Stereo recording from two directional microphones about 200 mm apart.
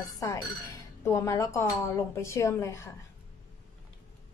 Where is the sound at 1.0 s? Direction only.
15° left (ahead or behind).